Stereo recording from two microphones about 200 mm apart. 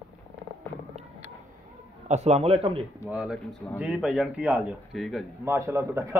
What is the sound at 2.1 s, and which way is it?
Speech, 35° right (ahead or behind).